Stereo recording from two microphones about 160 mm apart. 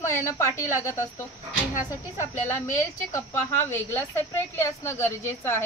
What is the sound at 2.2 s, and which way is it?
A woman's voice, 15° left (ahead or behind).